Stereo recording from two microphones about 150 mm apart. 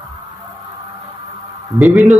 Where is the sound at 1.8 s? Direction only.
Centre (ahead or behind).